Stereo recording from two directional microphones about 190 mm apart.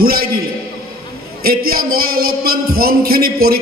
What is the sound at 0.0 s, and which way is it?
Music, 55° right (ahead or behind).